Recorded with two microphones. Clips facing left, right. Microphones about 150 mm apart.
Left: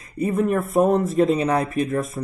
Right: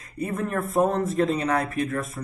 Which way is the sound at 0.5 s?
15° left (ahead or behind).